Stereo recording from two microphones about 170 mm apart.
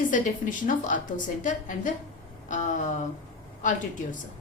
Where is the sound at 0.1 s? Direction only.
50° left (ahead or behind).